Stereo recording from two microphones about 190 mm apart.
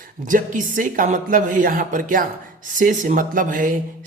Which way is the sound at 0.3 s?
45° right (ahead or behind).